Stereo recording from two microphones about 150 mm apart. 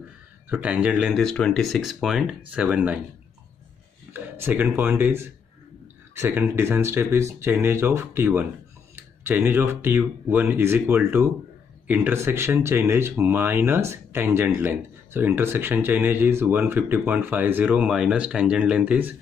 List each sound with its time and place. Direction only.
0.5 s speech: 10° right (ahead or behind)
4.1 s speech: 15° right (ahead or behind)